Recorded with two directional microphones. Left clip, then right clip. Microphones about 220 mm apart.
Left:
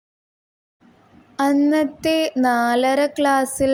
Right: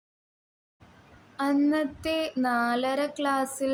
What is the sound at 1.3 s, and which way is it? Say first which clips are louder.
Speech: left 8 dB; 30° left (ahead or behind).